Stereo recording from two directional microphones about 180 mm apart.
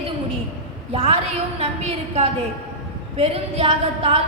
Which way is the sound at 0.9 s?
35° right (ahead or behind).